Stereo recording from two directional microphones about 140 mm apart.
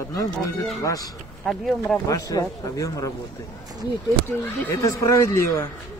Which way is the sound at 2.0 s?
25° left (ahead or behind).